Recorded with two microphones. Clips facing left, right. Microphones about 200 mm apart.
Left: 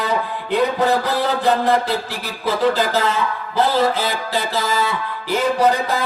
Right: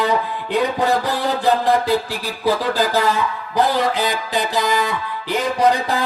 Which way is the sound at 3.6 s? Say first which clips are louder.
Even; 15° right (ahead or behind).